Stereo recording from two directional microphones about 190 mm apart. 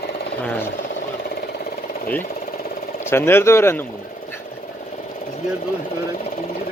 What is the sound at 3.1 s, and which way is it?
Speech, 10° left (ahead or behind).